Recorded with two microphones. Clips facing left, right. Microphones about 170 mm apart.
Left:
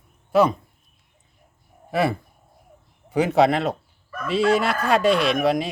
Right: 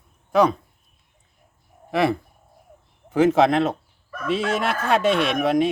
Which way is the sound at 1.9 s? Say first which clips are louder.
Right 1 dB; centre (ahead or behind).